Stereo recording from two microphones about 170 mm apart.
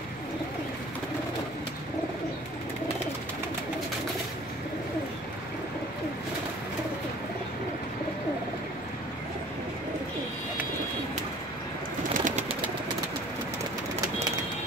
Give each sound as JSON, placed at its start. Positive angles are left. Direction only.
{"t": 12.1, "sound": "bird", "side_deg": -50}